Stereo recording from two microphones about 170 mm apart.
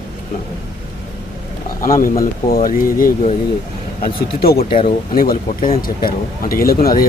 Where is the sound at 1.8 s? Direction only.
55° left (ahead or behind).